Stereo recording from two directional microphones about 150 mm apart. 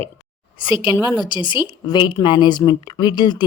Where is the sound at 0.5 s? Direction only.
35° left (ahead or behind).